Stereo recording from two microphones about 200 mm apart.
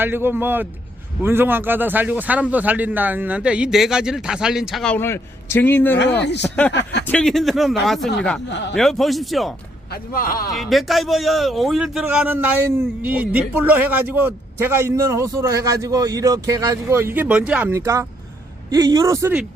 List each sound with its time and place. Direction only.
0.0 s a man's voice: 10° right (ahead or behind); by 6.0 s 10° left (ahead or behind)
6.1 s speech: 60° left (ahead or behind)
7.0 s speech: 5° left (ahead or behind)
8.4 s speech: 60° left (ahead or behind)
8.7 s speech: centre (ahead or behind)
9.9 s a man's voice: 45° left (ahead or behind)
10.5 s a man's voice: centre (ahead or behind)